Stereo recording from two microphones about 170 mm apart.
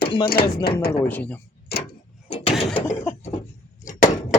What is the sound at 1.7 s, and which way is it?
Clock, 70° left (ahead or behind).